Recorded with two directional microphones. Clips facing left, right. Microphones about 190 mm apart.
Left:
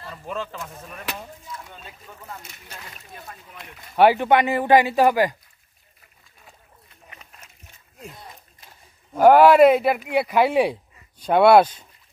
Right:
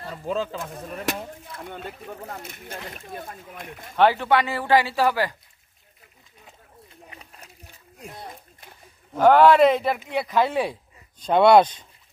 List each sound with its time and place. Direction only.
0.0 s speech: 35° right (ahead or behind)
1.0 s speech: 60° right (ahead or behind)
3.9 s speech: 15° left (ahead or behind)
7.1 s a sound: 35° right (ahead or behind)
9.1 s speech: 10° left (ahead or behind)